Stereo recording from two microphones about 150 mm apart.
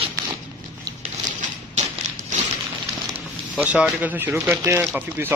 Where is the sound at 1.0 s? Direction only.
50° right (ahead or behind).